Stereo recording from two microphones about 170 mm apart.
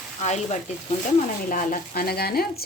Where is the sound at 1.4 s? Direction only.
55° left (ahead or behind).